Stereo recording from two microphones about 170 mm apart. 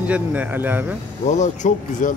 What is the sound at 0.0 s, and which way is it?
Speech, 10° right (ahead or behind).